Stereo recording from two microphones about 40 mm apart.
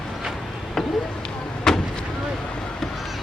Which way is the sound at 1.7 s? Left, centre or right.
Centre.